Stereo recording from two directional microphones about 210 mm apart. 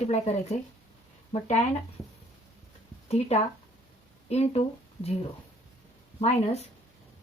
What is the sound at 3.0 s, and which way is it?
A woman's voice, 30° left (ahead or behind).